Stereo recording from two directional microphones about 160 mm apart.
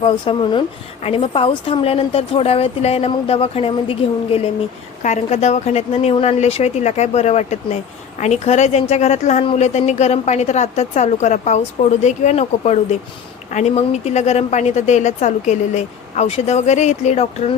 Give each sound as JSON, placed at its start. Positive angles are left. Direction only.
{"t": 0.0, "sound": "speech", "side_deg": 35}
{"t": 5.0, "sound": "a woman's voice", "side_deg": 45}